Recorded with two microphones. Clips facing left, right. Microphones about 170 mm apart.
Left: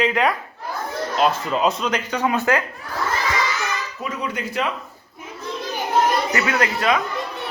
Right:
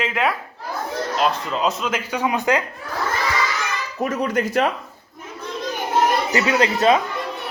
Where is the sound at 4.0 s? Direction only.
45° right (ahead or behind).